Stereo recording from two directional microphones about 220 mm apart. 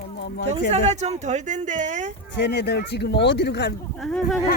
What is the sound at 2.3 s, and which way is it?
Speech, 50° left (ahead or behind).